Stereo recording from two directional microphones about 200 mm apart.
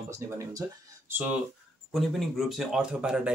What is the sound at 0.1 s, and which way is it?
Speech, 15° right (ahead or behind).